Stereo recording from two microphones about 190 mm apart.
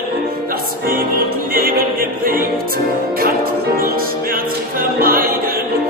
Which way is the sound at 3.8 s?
50° right (ahead or behind).